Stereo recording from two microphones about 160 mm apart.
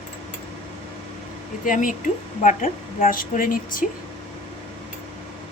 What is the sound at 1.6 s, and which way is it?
A woman's voice, 55° left (ahead or behind).